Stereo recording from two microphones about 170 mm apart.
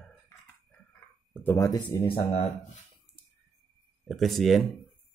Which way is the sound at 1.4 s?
15° left (ahead or behind).